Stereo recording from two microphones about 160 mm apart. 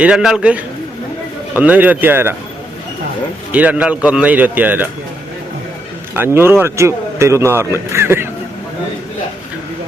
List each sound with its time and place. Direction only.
0.0 s a man's voice: 5° right (ahead or behind)
3.5 s speech: 10° right (ahead or behind)
6.1 s speech: 15° right (ahead or behind)